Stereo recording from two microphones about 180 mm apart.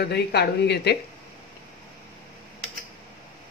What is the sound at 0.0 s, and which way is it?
Speech, 65° left (ahead or behind).